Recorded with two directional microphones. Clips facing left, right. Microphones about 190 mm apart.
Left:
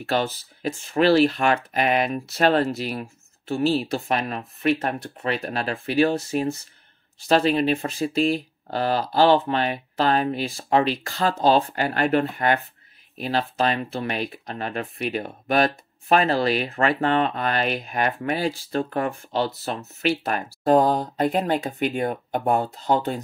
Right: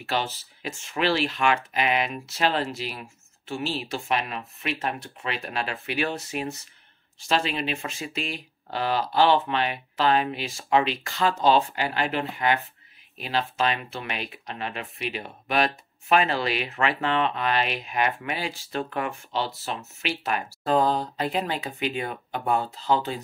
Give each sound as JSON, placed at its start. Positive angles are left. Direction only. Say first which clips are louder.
{"t": 0.0, "sound": "speech", "louder": "left 5 dB", "side_deg": 45}